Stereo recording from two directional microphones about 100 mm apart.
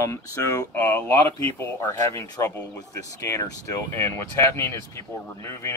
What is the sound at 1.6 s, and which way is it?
Speech, 30° left (ahead or behind).